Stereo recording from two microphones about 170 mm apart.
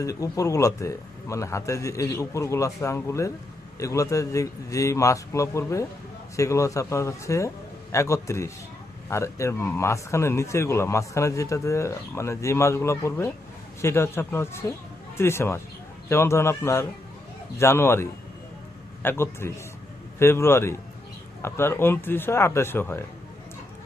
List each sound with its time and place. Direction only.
0.0 s a man's voice: 20° left (ahead or behind)